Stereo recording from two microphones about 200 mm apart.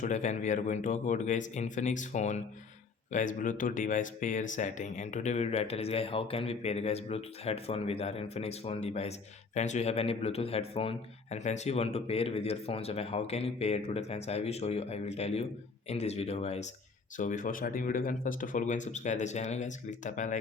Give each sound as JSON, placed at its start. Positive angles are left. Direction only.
{"t": 0.0, "sound": "speech", "side_deg": 35}